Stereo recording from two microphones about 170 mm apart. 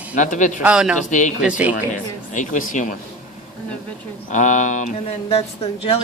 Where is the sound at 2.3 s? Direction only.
50° left (ahead or behind).